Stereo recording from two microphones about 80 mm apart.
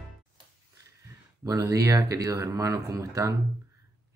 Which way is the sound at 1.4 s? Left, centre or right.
Right.